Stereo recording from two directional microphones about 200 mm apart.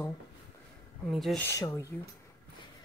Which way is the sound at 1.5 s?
15° left (ahead or behind).